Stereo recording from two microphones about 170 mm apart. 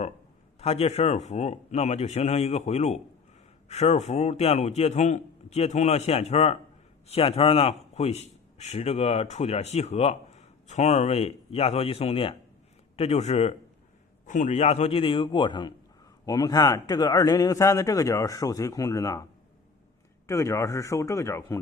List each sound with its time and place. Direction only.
0.6 s a man's voice: 40° left (ahead or behind); by 19.2 s 20° left (ahead or behind)
20.2 s speech: 15° left (ahead or behind)